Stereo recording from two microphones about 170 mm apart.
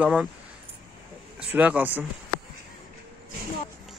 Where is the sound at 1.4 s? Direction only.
10° right (ahead or behind).